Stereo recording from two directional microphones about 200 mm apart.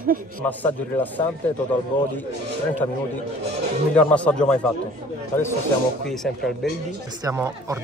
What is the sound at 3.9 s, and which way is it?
Speech, 5° left (ahead or behind).